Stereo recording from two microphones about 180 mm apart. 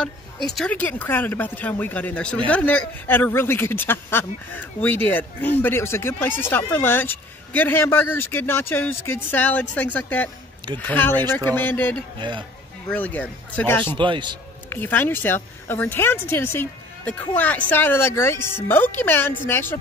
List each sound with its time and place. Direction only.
0.6 s speech: 10° left (ahead or behind)
12.2 s a man's voice: 25° right (ahead or behind)
12.9 s speech: 10° left (ahead or behind)
13.9 s a man's voice: 25° right (ahead or behind)
14.7 s speech: 10° left (ahead or behind)